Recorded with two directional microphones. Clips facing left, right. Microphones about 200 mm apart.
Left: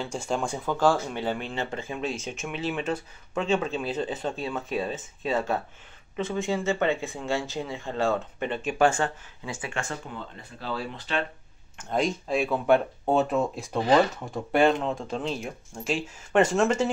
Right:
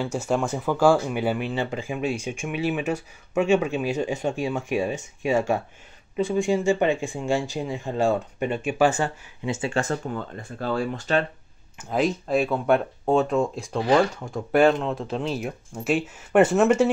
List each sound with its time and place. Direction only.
0.0 s speech: 5° right (ahead or behind)
9.5 s speech: 30° right (ahead or behind); by 11.2 s 45° right (ahead or behind)
11.8 s speech: 5° right (ahead or behind)